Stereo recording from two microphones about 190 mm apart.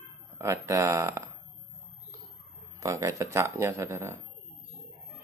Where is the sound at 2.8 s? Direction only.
15° right (ahead or behind).